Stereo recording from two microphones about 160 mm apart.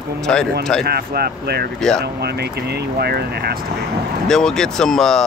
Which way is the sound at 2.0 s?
90° right.